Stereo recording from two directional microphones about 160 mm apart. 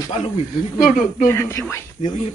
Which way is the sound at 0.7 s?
65° left (ahead or behind).